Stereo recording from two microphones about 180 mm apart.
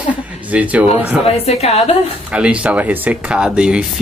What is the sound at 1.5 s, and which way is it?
Speech, 35° left (ahead or behind).